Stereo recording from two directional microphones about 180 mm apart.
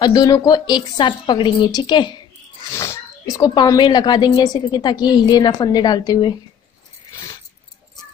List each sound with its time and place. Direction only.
0.0 s a woman's voice: 20° left (ahead or behind)